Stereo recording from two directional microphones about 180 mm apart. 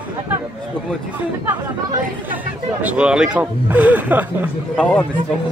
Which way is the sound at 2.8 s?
5° right (ahead or behind).